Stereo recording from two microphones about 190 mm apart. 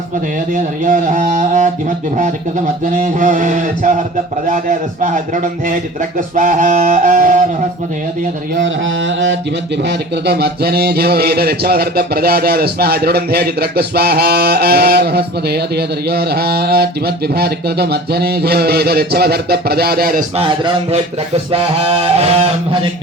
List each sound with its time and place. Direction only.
0.5 s a man's voice: 45° right (ahead or behind)
2.8 s a man's voice: 45° right (ahead or behind)
8.6 s mantra: 75° right (ahead or behind)
10.2 s a man's voice: 55° right (ahead or behind)
20.3 s music: 30° right (ahead or behind)